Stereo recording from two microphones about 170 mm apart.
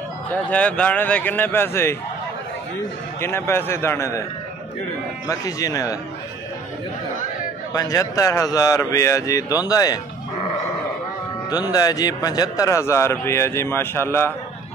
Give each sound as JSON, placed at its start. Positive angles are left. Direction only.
{"t": 0.3, "sound": "a man's voice", "side_deg": 10}
{"t": 3.2, "sound": "a man's voice", "side_deg": 15}
{"t": 5.3, "sound": "speech", "side_deg": 20}
{"t": 7.7, "sound": "speech", "side_deg": 20}
{"t": 11.5, "sound": "a man's voice", "side_deg": 20}